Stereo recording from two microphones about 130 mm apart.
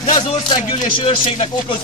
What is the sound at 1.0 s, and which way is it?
Speech, 45° left (ahead or behind).